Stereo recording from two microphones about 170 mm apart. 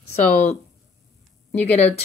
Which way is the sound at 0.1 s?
40° left (ahead or behind).